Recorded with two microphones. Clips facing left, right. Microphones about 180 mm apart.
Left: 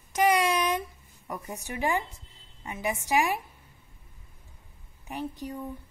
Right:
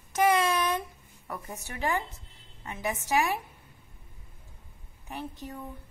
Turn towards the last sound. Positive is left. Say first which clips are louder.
# left 4 dB
turn(degrees=15)  # may be behind; listen again after turning